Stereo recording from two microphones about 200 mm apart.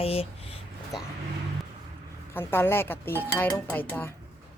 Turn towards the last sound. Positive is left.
turn(degrees=10)  # may be behind; listen again after turning